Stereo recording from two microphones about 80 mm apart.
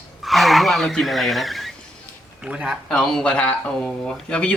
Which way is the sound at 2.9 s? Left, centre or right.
Centre.